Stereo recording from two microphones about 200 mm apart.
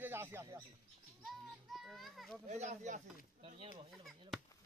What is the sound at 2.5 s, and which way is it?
Speech, 35° right (ahead or behind).